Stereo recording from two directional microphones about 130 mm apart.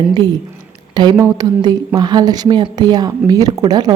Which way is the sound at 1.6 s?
30° right (ahead or behind).